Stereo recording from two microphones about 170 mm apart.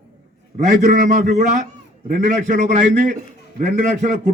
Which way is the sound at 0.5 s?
45° right (ahead or behind).